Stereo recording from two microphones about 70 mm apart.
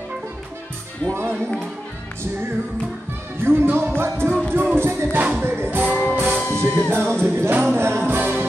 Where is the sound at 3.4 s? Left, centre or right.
Right.